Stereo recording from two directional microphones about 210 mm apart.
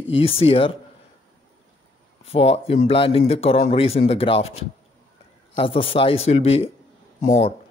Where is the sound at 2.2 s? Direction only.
30° left (ahead or behind).